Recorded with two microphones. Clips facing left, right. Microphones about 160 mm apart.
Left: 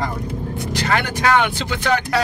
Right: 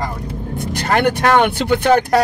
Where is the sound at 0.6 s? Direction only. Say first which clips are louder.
Right 4 dB; 50° right (ahead or behind).